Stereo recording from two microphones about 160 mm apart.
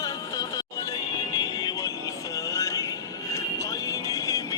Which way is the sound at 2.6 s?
20° left (ahead or behind).